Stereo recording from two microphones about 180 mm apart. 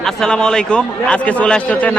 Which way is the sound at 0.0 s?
5° left (ahead or behind).